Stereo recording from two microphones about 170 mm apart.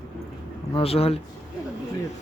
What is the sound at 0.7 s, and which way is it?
Speech, 35° left (ahead or behind).